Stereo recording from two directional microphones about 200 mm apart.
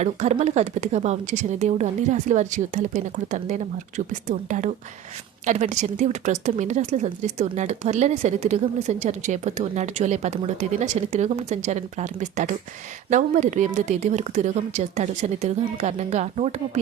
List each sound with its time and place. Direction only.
0.0 s speech: 35° right (ahead or behind)